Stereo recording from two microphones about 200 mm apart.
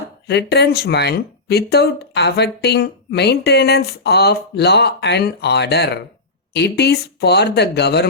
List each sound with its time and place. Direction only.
0.3 s speech: 55° left (ahead or behind)